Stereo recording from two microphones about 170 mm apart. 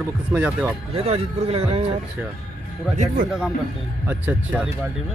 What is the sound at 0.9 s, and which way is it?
A man's voice, 35° right (ahead or behind).